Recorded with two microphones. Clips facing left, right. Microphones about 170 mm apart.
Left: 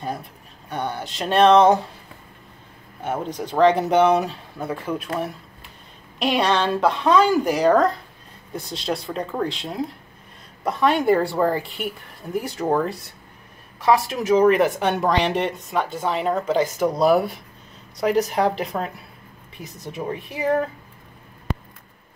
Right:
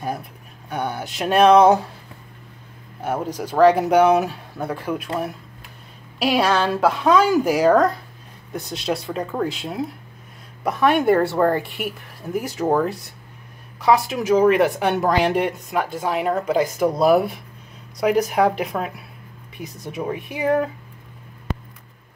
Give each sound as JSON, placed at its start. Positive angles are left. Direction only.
{"t": 0.0, "sound": "speech", "side_deg": -5}
{"t": 3.3, "sound": "speech", "side_deg": -5}